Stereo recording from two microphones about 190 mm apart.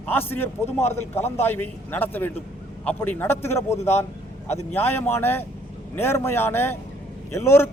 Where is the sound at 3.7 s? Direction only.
35° left (ahead or behind).